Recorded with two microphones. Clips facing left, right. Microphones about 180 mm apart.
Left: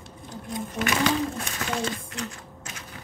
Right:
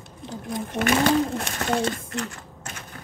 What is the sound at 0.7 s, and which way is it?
Pigeon, 50° right (ahead or behind).